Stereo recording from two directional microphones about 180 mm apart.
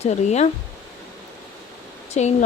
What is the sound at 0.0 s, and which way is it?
Speech, 40° left (ahead or behind).